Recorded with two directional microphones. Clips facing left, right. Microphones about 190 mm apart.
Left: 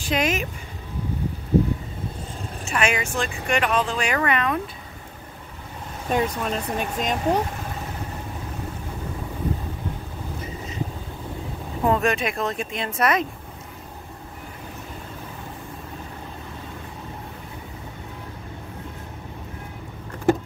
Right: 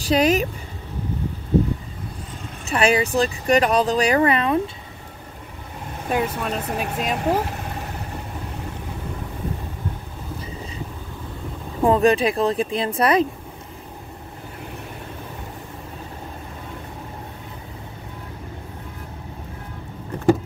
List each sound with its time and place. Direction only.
0.0 s speech: 35° right (ahead or behind)
2.6 s speech: 35° right (ahead or behind)
6.0 s speech: 5° right (ahead or behind)
11.8 s speech: 30° right (ahead or behind)